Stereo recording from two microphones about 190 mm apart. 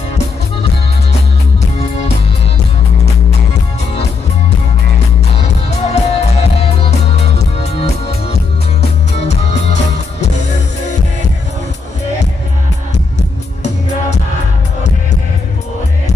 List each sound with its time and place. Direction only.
5.8 s music: 35° left (ahead or behind)